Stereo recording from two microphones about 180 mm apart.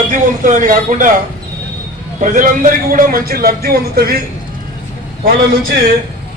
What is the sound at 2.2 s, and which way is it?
A man's voice, 50° right (ahead or behind).